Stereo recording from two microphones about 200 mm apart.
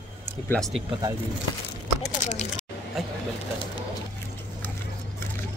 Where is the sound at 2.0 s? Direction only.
35° left (ahead or behind).